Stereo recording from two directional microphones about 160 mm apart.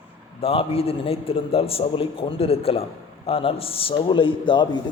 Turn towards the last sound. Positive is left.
turn(degrees=30)  # may be behind; listen again after turning